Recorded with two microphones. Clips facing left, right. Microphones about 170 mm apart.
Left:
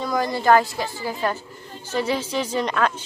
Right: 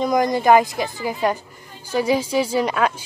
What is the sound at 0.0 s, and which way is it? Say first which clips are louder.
Speech: right 4 dB; 15° right (ahead or behind).